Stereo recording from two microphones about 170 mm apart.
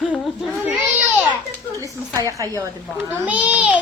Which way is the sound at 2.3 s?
20° right (ahead or behind).